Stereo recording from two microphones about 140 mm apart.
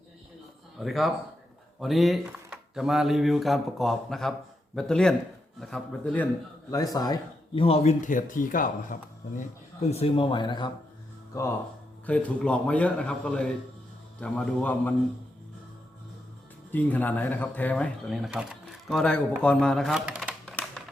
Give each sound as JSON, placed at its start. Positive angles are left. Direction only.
{"t": 0.8, "sound": "speech", "side_deg": 0}
{"t": 6.9, "sound": "speech", "side_deg": 30}
{"t": 7.6, "sound": "speech", "side_deg": 50}
{"t": 9.9, "sound": "speech", "side_deg": 40}
{"t": 11.3, "sound": "speech", "side_deg": 20}
{"t": 12.0, "sound": "speech", "side_deg": 10}
{"t": 16.7, "sound": "speech", "side_deg": 10}
{"t": 20.4, "sound": "typewriter", "side_deg": 5}